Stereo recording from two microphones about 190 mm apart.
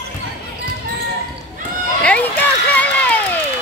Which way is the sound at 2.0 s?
5° left (ahead or behind).